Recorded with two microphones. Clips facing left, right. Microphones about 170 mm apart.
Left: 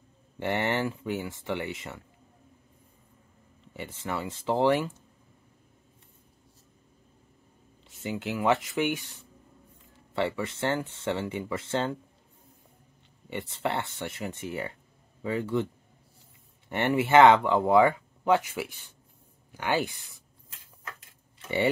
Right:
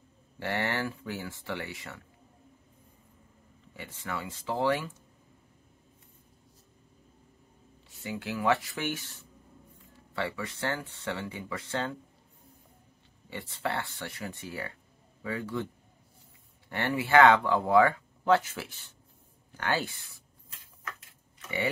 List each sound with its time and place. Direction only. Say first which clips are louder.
0.4 s speech: left 4 dB; 20° left (ahead or behind)
3.7 s speech: left 4 dB; 25° left (ahead or behind)
7.9 s speech: left 3 dB; 20° left (ahead or behind)
10.1 s speech: left 5 dB; 25° left (ahead or behind)
13.3 s speech: left 3 dB; 20° left (ahead or behind)
21.4 s a sound: left 6 dB; 30° left (ahead or behind)